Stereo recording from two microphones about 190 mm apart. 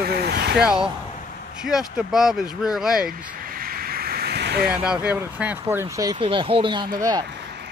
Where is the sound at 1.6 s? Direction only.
5° right (ahead or behind).